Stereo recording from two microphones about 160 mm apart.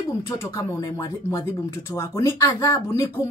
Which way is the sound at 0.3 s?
15° left (ahead or behind).